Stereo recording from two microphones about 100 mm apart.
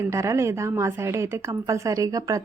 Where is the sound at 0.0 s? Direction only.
30° right (ahead or behind).